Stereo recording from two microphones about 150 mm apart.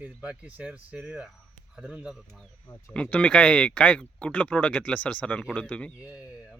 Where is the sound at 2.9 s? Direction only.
5° left (ahead or behind).